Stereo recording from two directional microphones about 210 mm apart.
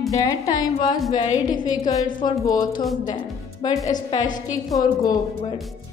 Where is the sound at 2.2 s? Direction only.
20° left (ahead or behind).